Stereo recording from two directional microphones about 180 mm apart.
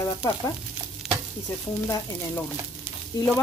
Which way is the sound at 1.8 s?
15° left (ahead or behind).